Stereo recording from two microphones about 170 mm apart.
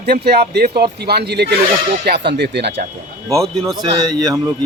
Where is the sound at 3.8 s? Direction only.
25° right (ahead or behind).